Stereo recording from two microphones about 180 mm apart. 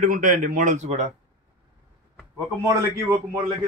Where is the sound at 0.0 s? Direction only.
50° right (ahead or behind).